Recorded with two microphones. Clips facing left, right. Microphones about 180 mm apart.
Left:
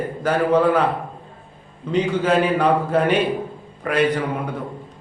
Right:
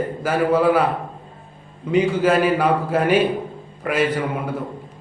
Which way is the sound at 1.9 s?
10° right (ahead or behind).